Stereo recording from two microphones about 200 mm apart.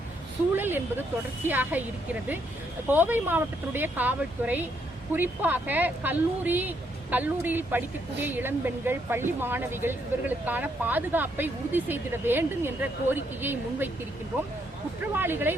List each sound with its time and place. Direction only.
0.5 s a sound: 10° right (ahead or behind)
1.5 s speech: 10° right (ahead or behind)
2.9 s speech: 10° right (ahead or behind)
15.1 s speech: 10° right (ahead or behind)